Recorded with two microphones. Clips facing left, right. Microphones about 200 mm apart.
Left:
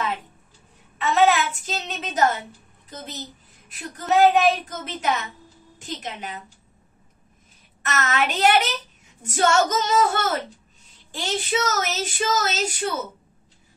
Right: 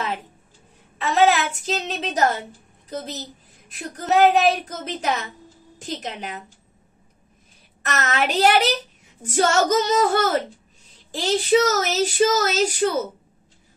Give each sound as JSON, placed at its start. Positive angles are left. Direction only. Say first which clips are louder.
{"t": 1.0, "sound": "speech", "louder": "right 1 dB", "side_deg": -40}
{"t": 3.9, "sound": "speech", "louder": "right 1 dB", "side_deg": -40}
{"t": 8.0, "sound": "speech", "louder": "right 2 dB", "side_deg": -40}